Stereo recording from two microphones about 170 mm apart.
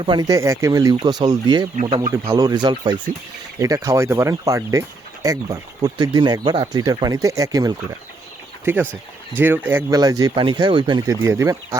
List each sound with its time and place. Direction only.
0.0 s speech: 25° right (ahead or behind)
2.1 s speech: 15° right (ahead or behind)
8.6 s speech: 10° right (ahead or behind)